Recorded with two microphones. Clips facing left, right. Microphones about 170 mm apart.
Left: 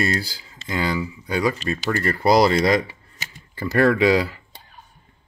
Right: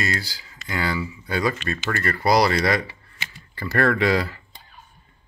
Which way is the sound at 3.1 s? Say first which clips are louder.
Right 1 dB; 40° left (ahead or behind).